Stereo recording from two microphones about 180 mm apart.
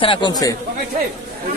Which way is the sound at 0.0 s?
25° left (ahead or behind).